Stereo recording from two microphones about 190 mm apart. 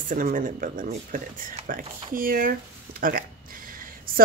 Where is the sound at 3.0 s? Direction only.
45° right (ahead or behind).